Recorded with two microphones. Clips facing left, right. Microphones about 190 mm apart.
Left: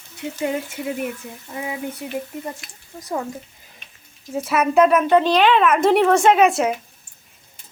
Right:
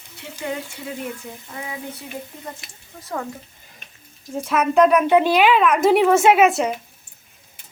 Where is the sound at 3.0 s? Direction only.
15° left (ahead or behind).